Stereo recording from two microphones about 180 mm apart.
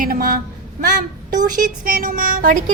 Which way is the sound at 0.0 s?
50° right (ahead or behind).